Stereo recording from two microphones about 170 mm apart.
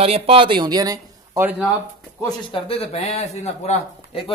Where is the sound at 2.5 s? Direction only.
40° left (ahead or behind).